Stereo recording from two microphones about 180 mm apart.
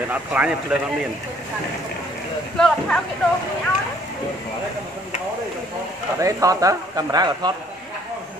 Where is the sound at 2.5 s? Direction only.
5° left (ahead or behind).